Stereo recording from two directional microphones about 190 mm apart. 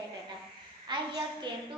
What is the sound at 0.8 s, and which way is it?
Speech, 25° right (ahead or behind).